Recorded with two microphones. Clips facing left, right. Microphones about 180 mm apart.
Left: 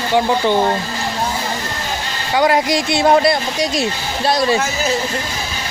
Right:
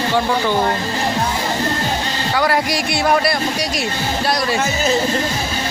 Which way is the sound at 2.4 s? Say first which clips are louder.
Left 4 dB; 20° left (ahead or behind).